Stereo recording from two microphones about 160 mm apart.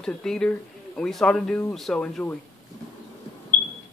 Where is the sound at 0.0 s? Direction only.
5° left (ahead or behind).